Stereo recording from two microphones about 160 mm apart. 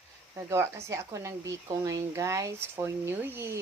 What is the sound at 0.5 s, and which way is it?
Speech, 15° right (ahead or behind).